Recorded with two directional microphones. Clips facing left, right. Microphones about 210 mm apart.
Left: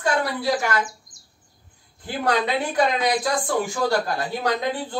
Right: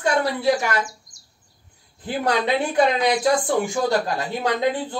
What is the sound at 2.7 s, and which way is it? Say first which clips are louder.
Speech: right 2 dB; 25° right (ahead or behind).